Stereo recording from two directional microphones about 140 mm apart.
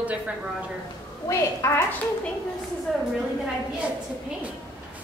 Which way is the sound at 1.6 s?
20° left (ahead or behind).